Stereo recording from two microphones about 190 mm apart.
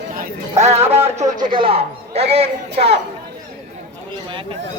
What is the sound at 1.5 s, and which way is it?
A man's voice, 25° right (ahead or behind).